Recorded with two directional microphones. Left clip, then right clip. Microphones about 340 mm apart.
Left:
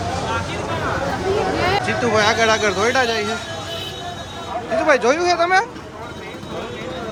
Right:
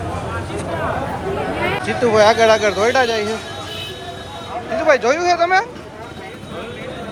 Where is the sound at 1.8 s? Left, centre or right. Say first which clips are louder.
Right 9 dB; centre.